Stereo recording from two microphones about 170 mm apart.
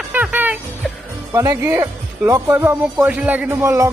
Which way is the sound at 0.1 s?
10° right (ahead or behind).